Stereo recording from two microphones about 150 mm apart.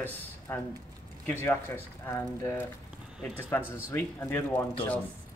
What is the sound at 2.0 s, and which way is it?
Speech, 15° left (ahead or behind).